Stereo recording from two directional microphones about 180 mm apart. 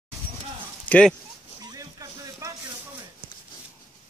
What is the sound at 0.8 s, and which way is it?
Speech, 5° left (ahead or behind).